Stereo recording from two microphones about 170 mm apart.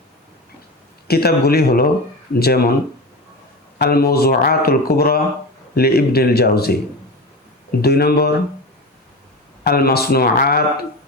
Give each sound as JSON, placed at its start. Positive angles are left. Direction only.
{"t": 1.0, "sound": "speech", "side_deg": 65}
{"t": 3.8, "sound": "speech", "side_deg": 65}
{"t": 7.8, "sound": "speech", "side_deg": 70}
{"t": 9.6, "sound": "speech", "side_deg": 65}